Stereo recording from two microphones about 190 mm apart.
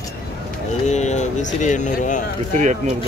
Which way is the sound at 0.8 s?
40° left (ahead or behind).